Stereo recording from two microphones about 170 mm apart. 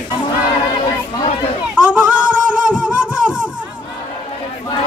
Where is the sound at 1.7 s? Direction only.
5° right (ahead or behind).